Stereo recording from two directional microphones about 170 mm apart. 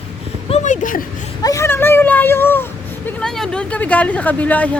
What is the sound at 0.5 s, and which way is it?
Speech, 45° left (ahead or behind).